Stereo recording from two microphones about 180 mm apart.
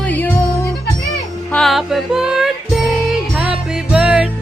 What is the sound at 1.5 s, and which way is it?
Music, centre (ahead or behind).